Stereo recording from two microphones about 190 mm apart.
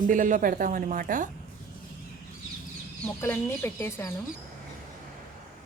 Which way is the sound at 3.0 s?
10° left (ahead or behind).